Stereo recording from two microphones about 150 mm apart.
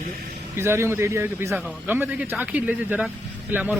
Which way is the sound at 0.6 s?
15° right (ahead or behind).